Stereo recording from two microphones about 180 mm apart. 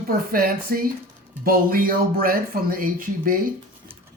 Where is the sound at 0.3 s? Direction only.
55° right (ahead or behind).